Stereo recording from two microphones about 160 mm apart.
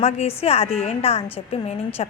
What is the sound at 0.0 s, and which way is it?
A woman's voice, 40° left (ahead or behind).